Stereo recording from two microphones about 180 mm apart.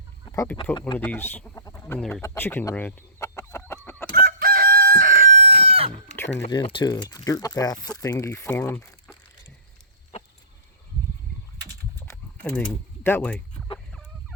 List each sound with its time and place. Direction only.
0.3 s chicken: 15° left (ahead or behind)
0.5 s speech: 25° left (ahead or behind)
0.9 s speech: 10° left (ahead or behind)
2.0 s speech: centre (ahead or behind)
2.2 s chicken: 10° left (ahead or behind)
4.1 s chicken: 55° right (ahead or behind); by 5.9 s 35° right (ahead or behind)
6.5 s speech: 30° left (ahead or behind)
11.9 s a sound: 10° left (ahead or behind)